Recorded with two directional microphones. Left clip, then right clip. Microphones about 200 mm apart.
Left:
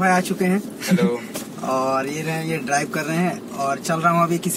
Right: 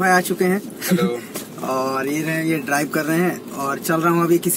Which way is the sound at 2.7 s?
10° right (ahead or behind).